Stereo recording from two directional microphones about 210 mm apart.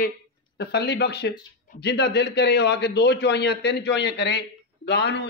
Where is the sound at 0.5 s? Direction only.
50° left (ahead or behind).